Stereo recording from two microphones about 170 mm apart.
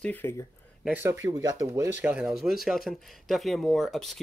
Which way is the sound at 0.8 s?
10° right (ahead or behind).